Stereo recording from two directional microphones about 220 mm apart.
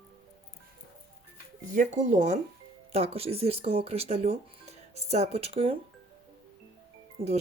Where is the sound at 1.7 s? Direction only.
35° right (ahead or behind).